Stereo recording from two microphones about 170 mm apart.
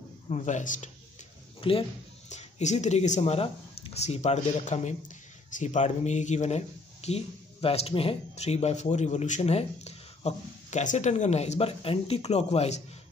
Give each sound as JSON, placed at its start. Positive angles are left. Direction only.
{"t": 0.3, "sound": "speech", "side_deg": 45}
{"t": 1.6, "sound": "speech", "side_deg": 30}